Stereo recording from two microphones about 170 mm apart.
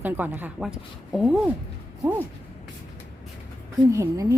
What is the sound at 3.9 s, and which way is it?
Speech, 20° right (ahead or behind).